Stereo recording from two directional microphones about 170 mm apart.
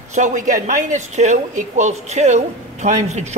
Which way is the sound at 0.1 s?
45° right (ahead or behind).